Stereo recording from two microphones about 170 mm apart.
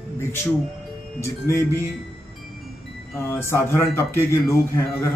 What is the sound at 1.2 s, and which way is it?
Speech, 15° left (ahead or behind).